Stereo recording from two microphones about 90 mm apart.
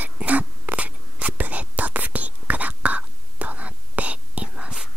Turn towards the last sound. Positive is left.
turn(degrees=-10)  # may be behind; listen again after turning